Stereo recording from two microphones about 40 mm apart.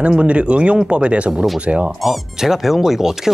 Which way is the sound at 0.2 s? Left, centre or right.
Right.